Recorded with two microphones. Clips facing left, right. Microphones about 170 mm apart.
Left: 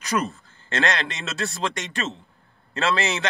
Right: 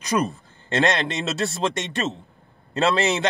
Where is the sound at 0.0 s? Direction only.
20° right (ahead or behind).